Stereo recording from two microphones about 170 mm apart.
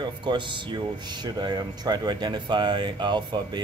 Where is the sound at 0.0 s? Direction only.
25° right (ahead or behind).